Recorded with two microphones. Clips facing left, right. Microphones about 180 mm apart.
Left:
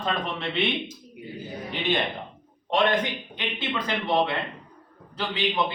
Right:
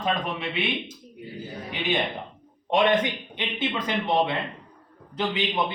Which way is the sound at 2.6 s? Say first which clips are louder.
Right 2 dB; 15° right (ahead or behind).